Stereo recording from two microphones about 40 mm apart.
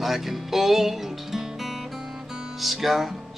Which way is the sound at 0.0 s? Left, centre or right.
Centre.